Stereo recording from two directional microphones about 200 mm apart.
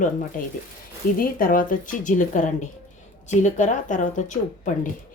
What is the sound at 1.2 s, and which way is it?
Speech, 45° left (ahead or behind).